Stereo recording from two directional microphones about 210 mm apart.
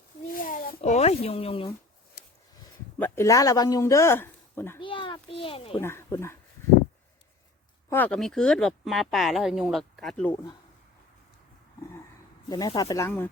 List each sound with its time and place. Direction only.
0.4 s a sound: 40° left (ahead or behind)
0.8 s speech: 30° left (ahead or behind)
3.0 s speech: 15° left (ahead or behind)
4.8 s a sound: 25° left (ahead or behind)
5.8 s speech: 10° left (ahead or behind)
7.9 s speech: 10° left (ahead or behind)
12.5 s speech: 15° left (ahead or behind)